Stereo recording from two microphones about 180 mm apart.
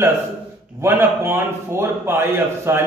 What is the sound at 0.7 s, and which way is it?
A man's voice, 10° right (ahead or behind).